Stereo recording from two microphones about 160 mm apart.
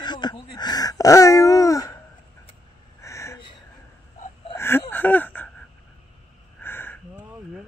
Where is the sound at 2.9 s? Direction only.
20° left (ahead or behind).